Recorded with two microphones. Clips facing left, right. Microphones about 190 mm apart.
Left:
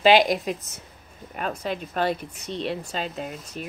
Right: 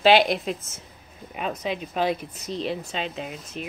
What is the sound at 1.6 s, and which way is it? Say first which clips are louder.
Speech: right 1 dB; centre (ahead or behind).